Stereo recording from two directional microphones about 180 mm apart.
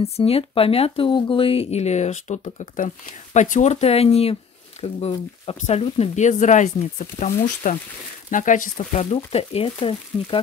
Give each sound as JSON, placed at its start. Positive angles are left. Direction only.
{"t": 0.0, "sound": "speech", "side_deg": 35}